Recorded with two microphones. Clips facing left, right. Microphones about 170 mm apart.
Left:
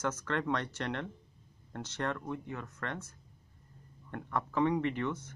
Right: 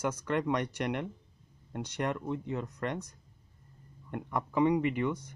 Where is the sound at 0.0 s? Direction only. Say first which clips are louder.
Right 3 dB; 10° right (ahead or behind).